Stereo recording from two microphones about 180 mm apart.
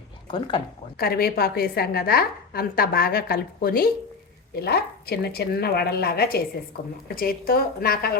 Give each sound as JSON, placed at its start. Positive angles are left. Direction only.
{"t": 0.3, "sound": "speech", "side_deg": 25}
{"t": 0.9, "sound": "a woman's voice", "side_deg": 60}